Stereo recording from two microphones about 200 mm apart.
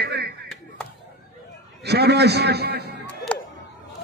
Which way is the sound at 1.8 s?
55° right (ahead or behind).